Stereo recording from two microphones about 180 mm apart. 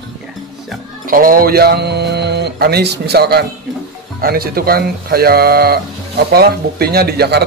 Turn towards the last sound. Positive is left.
turn(degrees=-60)  # may be behind; listen again after turning